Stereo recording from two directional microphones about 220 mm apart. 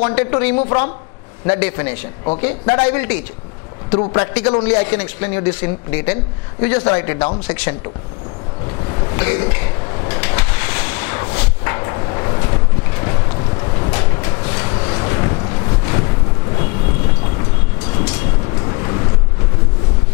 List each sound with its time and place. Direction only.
0.1 s a man's voice: 10° left (ahead or behind)
7.3 s a man's voice: 10° left (ahead or behind)
9.1 s a sound: 15° left (ahead or behind)
13.6 s vehicle: 20° left (ahead or behind)
18.7 s vehicle: 20° left (ahead or behind)